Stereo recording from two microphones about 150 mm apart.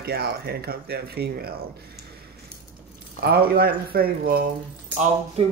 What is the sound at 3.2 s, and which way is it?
Speech, 90° right.